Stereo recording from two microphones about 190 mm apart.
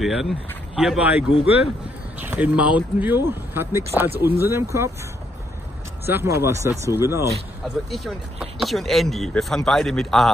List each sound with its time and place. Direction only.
0.0 s speech: centre (ahead or behind)
6.0 s speech: 15° right (ahead or behind)
7.6 s speech: centre (ahead or behind)